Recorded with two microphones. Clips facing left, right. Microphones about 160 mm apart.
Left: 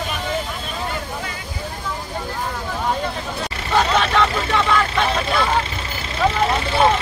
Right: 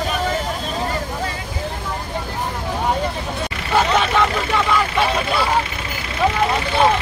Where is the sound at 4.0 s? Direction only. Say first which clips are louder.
Even; 5° right (ahead or behind).